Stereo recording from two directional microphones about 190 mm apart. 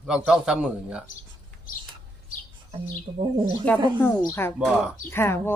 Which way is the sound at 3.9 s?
10° left (ahead or behind).